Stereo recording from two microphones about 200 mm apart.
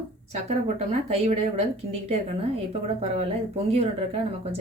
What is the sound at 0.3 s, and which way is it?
Speech, 35° right (ahead or behind).